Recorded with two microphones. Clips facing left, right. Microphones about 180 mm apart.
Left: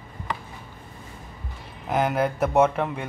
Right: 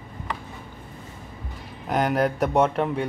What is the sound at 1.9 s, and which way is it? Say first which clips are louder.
Speech: right 1 dB; centre (ahead or behind).